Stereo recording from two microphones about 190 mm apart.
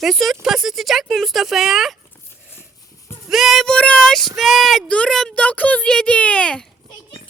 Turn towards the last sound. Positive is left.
turn(degrees=5)  # may be behind; listen again after turning